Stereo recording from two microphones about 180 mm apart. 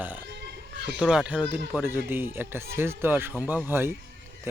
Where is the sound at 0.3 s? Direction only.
70° right (ahead or behind).